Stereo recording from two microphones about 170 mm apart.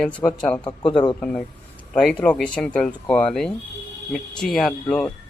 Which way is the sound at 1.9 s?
5° left (ahead or behind).